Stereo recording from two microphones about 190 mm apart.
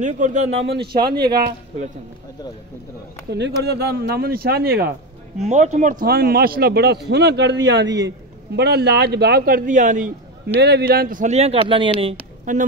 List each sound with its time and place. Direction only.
0.0 s a man's voice: 40° right (ahead or behind)
0.7 s speech: 55° right (ahead or behind)
3.3 s speech: 65° right (ahead or behind)
5.4 s a man's voice: 35° right (ahead or behind)
10.6 s a man's voice: 60° right (ahead or behind); by 12.2 s 30° right (ahead or behind)
12.5 s a man's voice: 45° right (ahead or behind)